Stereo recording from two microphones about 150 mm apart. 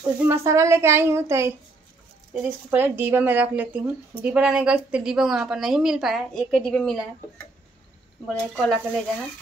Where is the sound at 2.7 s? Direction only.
15° right (ahead or behind); by 7.0 s 5° left (ahead or behind).